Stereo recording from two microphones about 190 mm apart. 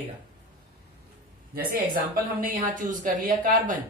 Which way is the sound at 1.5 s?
50° right (ahead or behind).